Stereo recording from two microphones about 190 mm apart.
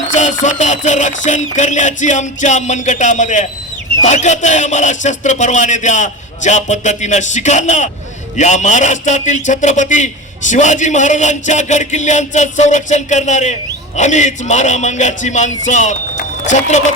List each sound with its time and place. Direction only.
0.1 s a man's voice: 40° left (ahead or behind)